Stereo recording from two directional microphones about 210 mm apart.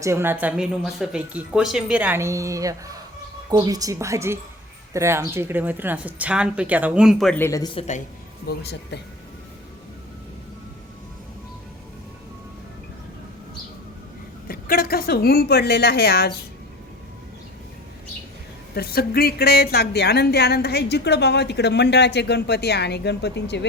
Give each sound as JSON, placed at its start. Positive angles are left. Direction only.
{"t": 0.0, "sound": "a woman's voice", "side_deg": -10}
{"t": 8.4, "sound": "speech", "side_deg": 50}
{"t": 14.4, "sound": "speech", "side_deg": 45}
{"t": 18.7, "sound": "speech", "side_deg": 45}